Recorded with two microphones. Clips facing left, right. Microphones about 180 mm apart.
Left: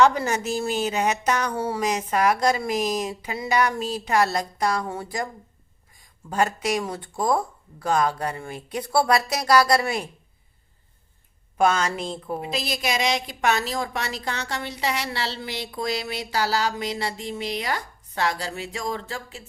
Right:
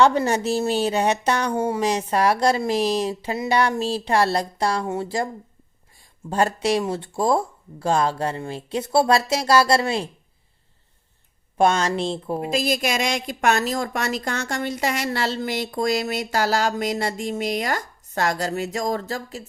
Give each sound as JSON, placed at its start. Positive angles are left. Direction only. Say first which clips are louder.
{"t": 0.0, "sound": "a woman's voice", "louder": "right 2 dB", "side_deg": -30}
{"t": 6.3, "sound": "speech", "louder": "right 3 dB", "side_deg": -30}
{"t": 11.5, "sound": "speech", "louder": "right 2 dB", "side_deg": -30}
{"t": 12.4, "sound": "a woman's voice", "louder": "right 9 dB", "side_deg": -45}